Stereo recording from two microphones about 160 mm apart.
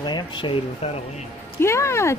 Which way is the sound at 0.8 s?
40° left (ahead or behind).